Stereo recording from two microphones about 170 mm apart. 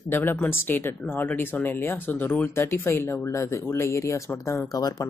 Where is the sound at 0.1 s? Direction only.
10° left (ahead or behind).